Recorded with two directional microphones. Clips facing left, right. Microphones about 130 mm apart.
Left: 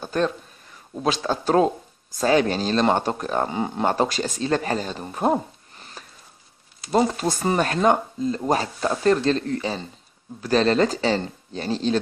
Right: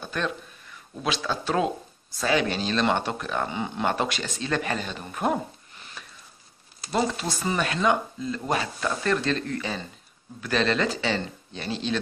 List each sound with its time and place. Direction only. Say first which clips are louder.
0.0 s speech: left 6 dB; 35° left (ahead or behind)